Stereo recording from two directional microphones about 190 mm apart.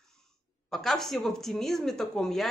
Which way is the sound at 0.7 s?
Centre (ahead or behind).